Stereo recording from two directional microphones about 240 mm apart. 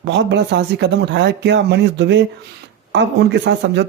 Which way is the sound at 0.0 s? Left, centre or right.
Right.